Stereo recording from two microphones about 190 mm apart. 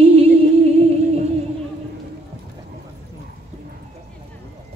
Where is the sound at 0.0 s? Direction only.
30° right (ahead or behind).